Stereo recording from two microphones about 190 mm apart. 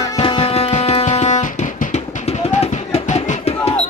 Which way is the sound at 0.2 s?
30° left (ahead or behind).